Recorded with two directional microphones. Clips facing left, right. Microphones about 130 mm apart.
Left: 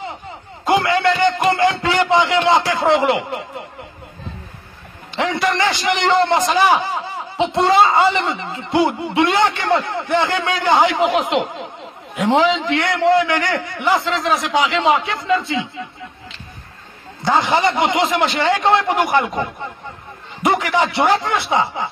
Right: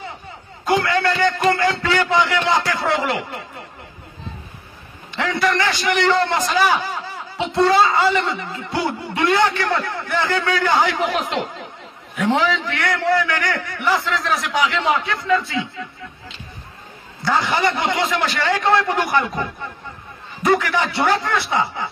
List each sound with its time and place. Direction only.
0.7 s a man's voice: 25° left (ahead or behind)
5.1 s a man's voice: 20° left (ahead or behind)
17.2 s a man's voice: 20° left (ahead or behind)
20.4 s a man's voice: 20° left (ahead or behind)